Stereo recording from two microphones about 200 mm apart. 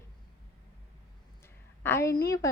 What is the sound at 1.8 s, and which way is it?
Speech, 10° left (ahead or behind).